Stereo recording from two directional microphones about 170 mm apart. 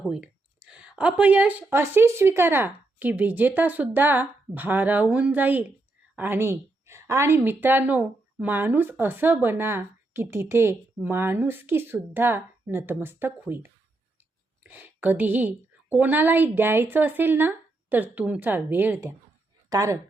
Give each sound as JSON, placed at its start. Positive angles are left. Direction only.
{"t": 0.0, "sound": "a woman's voice", "side_deg": -5}
{"t": 14.7, "sound": "a woman's voice", "side_deg": -10}